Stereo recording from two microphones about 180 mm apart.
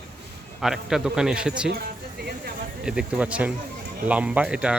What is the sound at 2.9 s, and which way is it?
Speech, 5° right (ahead or behind).